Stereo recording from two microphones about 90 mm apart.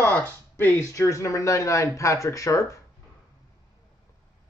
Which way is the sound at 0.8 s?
35° left (ahead or behind).